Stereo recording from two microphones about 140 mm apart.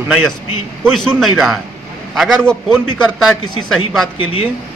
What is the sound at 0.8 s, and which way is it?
A man's voice, 5° left (ahead or behind).